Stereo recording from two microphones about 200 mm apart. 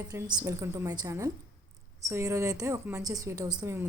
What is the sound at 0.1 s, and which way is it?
A woman's voice, 15° right (ahead or behind).